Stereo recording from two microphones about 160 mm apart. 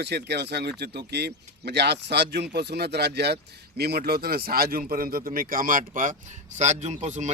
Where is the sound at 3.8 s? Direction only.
75° right (ahead or behind).